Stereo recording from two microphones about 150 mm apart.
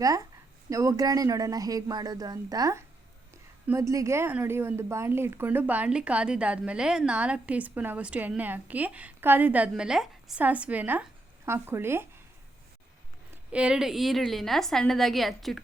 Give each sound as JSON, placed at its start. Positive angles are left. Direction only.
{"t": 0.0, "sound": "a woman's voice", "side_deg": -25}
{"t": 13.3, "sound": "a woman's voice", "side_deg": -10}